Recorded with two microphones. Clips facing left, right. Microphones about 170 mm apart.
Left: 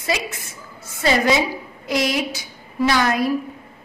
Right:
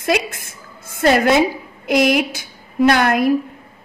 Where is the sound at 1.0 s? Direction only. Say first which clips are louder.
Right 5 dB; 55° right (ahead or behind).